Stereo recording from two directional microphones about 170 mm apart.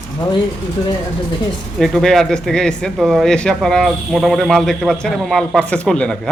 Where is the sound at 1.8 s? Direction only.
Centre (ahead or behind).